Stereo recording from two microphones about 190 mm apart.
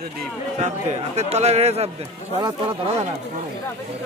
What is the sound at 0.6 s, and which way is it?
A man's voice, 35° right (ahead or behind).